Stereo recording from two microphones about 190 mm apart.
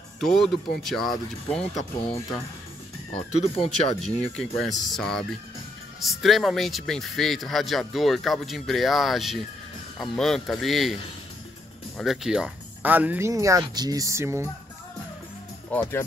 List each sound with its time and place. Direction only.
0.2 s speech: centre (ahead or behind)
3.5 s speech: 30° left (ahead or behind)
4.0 s speech: centre (ahead or behind)
12.0 s speech: centre (ahead or behind)
15.7 s speech: 10° left (ahead or behind)